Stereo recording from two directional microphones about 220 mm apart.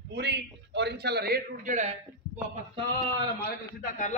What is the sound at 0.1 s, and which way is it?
A man's voice, 50° right (ahead or behind).